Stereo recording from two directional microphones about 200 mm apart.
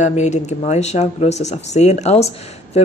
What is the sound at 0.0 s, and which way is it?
Speech, 35° left (ahead or behind).